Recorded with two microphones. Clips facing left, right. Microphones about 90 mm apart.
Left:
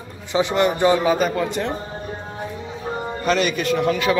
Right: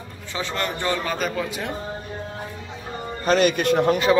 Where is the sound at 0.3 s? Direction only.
15° left (ahead or behind).